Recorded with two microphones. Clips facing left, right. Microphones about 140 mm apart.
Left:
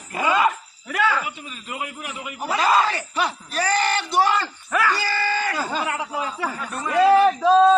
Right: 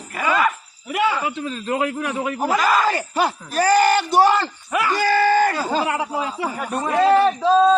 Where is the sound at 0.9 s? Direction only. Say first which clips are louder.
Right 2 dB; 20° right (ahead or behind).